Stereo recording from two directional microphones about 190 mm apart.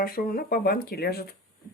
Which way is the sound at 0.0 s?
50° left (ahead or behind).